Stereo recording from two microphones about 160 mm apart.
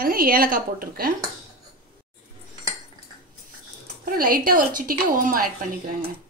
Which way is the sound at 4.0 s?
65° right (ahead or behind).